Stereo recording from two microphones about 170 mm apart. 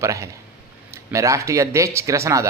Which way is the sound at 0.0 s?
15° right (ahead or behind).